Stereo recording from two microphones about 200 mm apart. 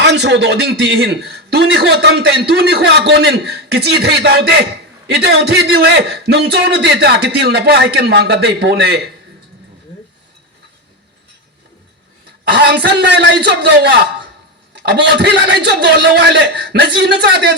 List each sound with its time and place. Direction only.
0.0 s a man's voice: 60° right (ahead or behind)
12.5 s a man's voice: 55° right (ahead or behind)